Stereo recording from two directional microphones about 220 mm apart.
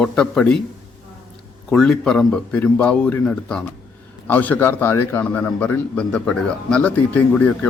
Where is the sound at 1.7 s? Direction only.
5° left (ahead or behind).